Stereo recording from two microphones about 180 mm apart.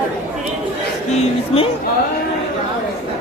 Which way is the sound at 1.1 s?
35° left (ahead or behind).